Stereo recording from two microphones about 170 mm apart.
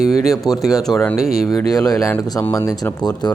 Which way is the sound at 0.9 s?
20° left (ahead or behind).